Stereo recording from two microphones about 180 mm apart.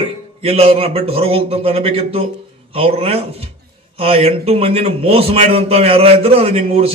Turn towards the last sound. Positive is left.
turn(degrees=-35)  # may be behind; listen again after turning